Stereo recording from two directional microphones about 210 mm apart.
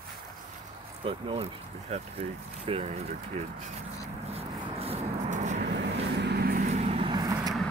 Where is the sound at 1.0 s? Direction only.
25° right (ahead or behind).